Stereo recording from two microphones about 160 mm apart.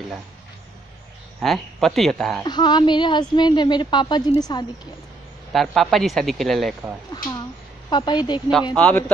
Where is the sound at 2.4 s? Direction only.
25° left (ahead or behind).